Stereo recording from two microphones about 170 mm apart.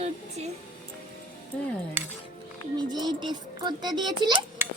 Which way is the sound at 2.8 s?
25° right (ahead or behind).